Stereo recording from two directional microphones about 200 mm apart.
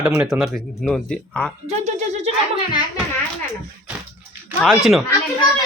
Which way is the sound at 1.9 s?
35° right (ahead or behind).